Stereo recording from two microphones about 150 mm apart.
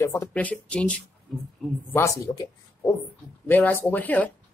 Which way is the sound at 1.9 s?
20° left (ahead or behind).